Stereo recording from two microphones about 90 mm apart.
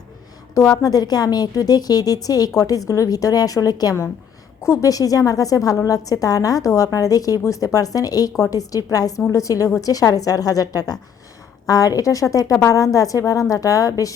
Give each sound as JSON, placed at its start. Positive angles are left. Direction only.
{"t": 0.5, "sound": "a woman's voice", "side_deg": 40}